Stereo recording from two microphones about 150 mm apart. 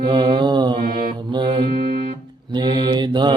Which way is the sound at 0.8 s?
75° right (ahead or behind).